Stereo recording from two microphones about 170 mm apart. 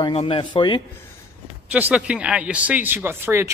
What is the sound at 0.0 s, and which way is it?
Speech, 30° left (ahead or behind).